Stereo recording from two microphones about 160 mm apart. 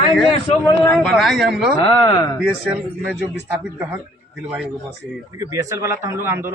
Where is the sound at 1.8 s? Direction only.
25° left (ahead or behind).